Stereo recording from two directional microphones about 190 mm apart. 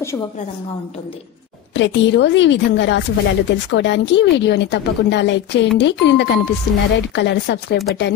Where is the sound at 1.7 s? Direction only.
70° left (ahead or behind).